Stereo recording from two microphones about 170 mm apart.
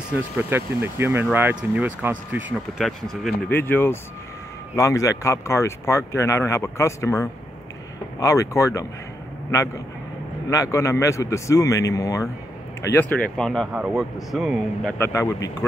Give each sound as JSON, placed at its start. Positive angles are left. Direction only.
{"t": 0.4, "sound": "speech", "side_deg": -15}
{"t": 3.4, "sound": "speech", "side_deg": 10}
{"t": 10.5, "sound": "speech", "side_deg": 20}
{"t": 15.1, "sound": "speech", "side_deg": 15}